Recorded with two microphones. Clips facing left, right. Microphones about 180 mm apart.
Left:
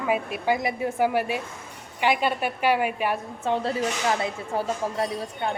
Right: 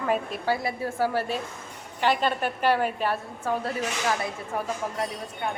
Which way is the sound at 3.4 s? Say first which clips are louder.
Left 4 dB; 25° left (ahead or behind).